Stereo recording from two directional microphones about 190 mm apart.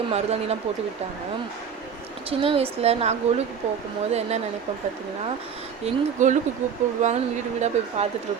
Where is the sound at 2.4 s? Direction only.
30° right (ahead or behind).